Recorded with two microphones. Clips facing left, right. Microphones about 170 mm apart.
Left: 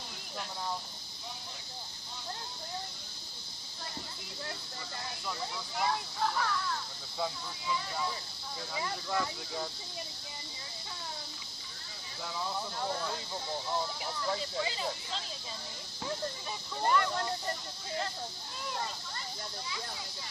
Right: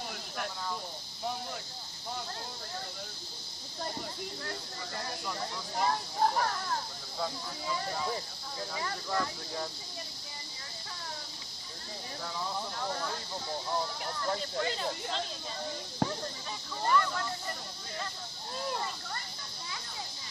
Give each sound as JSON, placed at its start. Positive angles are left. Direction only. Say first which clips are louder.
{"t": 5.8, "sound": "speech", "louder": "right 3 dB", "side_deg": -40}
{"t": 8.7, "sound": "speech", "louder": "even", "side_deg": 10}
{"t": 14.2, "sound": "speech", "louder": "right 2 dB", "side_deg": 5}
{"t": 16.0, "sound": "a sound", "louder": "right 5 dB", "side_deg": -55}